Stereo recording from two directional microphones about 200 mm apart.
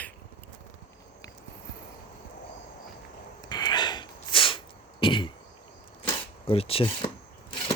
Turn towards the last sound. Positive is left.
turn(degrees=25)  # may be behind; listen again after turning